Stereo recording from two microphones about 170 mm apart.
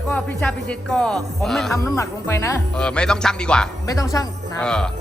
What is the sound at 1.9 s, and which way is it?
Speech, 15° left (ahead or behind).